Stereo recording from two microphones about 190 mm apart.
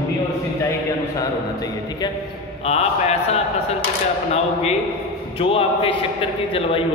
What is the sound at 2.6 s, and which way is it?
A man's voice, 35° left (ahead or behind).